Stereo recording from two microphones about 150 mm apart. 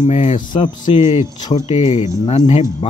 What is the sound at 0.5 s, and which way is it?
Speech, 35° left (ahead or behind).